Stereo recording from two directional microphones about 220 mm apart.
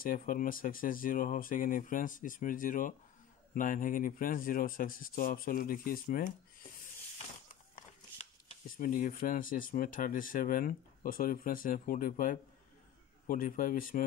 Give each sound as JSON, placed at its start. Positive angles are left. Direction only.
{"t": 0.0, "sound": "speech", "side_deg": 40}
{"t": 8.6, "sound": "speech", "side_deg": 40}